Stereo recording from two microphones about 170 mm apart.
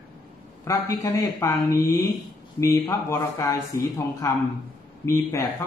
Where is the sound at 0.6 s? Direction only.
15° left (ahead or behind).